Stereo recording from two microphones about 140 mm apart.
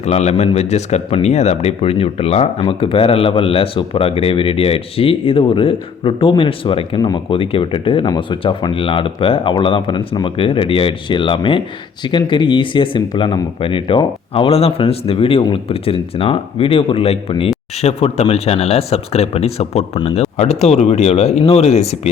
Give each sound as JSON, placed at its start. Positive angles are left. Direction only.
{"t": 0.0, "sound": "speech", "side_deg": 55}